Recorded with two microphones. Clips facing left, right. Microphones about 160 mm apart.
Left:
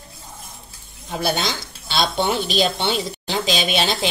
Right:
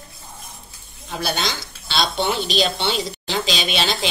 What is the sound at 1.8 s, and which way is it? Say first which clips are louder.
Speech: left 1 dB; 50° left (ahead or behind).